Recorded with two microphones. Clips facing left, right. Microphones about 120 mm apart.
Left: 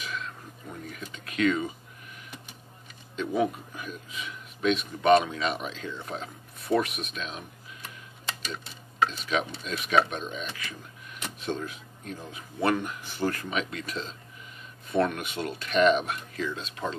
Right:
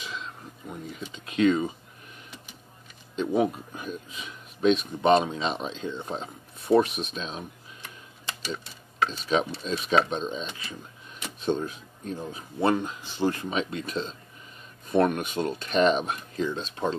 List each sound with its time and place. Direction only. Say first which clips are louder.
0.0 s a sound: left 1 dB; 20° right (ahead or behind)
1.1 s speech: right 3 dB; 25° right (ahead or behind)
3.2 s speech: right 2 dB; 30° right (ahead or behind)
9.3 s speech: right 4 dB; 35° right (ahead or behind)